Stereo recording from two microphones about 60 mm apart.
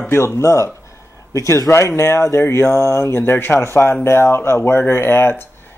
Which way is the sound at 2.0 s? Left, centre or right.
Left.